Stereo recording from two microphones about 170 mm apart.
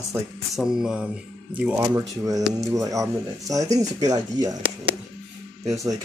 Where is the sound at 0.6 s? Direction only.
5° right (ahead or behind).